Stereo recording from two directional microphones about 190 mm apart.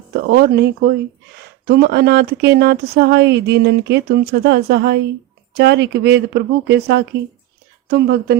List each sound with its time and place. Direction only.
0.3 s speech: 55° right (ahead or behind)